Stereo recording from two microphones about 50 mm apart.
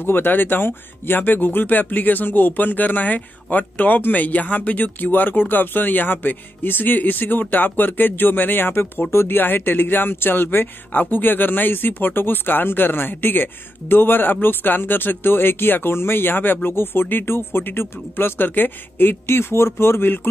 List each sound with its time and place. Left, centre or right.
0.0 s speech: left